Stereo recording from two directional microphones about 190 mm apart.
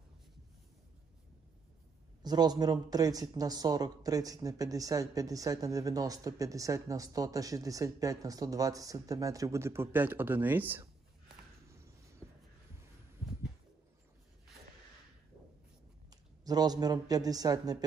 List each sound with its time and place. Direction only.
2.2 s speech: 20° right (ahead or behind)
11.7 s a sound: 15° right (ahead or behind)
16.1 s a woman's voice: 20° right (ahead or behind)